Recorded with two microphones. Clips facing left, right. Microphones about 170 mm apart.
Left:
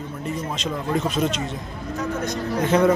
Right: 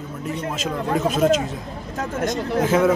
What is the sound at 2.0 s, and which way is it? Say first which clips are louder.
Speech: right 2 dB; 50° right (ahead or behind).